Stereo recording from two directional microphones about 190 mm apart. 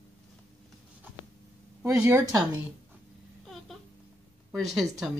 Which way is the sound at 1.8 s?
15° right (ahead or behind).